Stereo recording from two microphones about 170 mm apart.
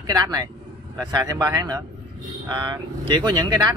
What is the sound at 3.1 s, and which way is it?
Speech, 25° right (ahead or behind).